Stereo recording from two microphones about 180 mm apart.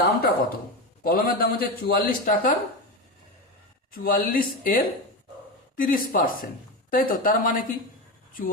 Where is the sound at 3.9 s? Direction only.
55° left (ahead or behind).